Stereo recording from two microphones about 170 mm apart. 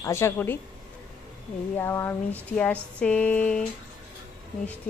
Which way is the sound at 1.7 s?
15° left (ahead or behind).